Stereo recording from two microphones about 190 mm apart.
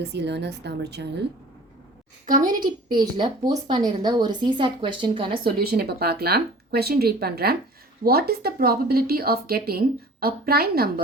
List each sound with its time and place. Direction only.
0.0 s speech: 60° right (ahead or behind)
2.2 s a woman's voice: 45° right (ahead or behind)
3.0 s a woman's voice: 20° right (ahead or behind)
5.3 s a woman's voice: 50° right (ahead or behind)